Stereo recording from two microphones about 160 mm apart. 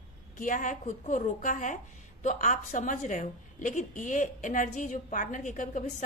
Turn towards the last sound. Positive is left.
turn(degrees=50)  # may be behind; listen again after turning